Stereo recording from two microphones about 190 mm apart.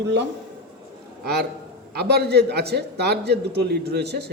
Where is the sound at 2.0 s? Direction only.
60° right (ahead or behind).